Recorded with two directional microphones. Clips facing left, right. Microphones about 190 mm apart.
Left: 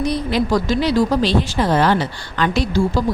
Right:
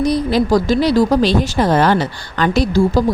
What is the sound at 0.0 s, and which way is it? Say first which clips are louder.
Speech: right 4 dB; 35° right (ahead or behind).